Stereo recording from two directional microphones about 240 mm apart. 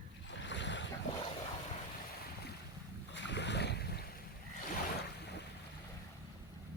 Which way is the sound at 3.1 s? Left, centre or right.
Left.